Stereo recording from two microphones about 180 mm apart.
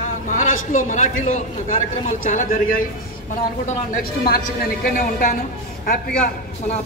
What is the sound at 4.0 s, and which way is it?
A man's voice, 55° left (ahead or behind).